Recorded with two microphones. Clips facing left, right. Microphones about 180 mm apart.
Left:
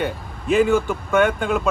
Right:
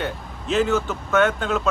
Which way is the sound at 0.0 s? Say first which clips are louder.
Left 3 dB; 10° left (ahead or behind).